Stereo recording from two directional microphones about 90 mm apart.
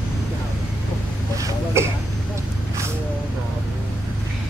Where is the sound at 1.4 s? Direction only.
35° right (ahead or behind).